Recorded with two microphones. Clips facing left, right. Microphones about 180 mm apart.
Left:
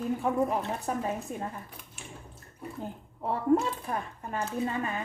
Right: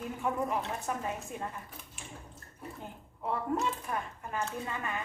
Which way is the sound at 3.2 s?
35° left (ahead or behind).